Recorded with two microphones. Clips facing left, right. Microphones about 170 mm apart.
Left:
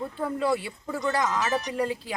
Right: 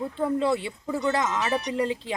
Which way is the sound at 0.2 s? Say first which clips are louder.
Right 2 dB; 25° right (ahead or behind).